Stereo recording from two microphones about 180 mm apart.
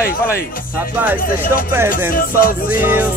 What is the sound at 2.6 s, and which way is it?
Speech, 10° right (ahead or behind).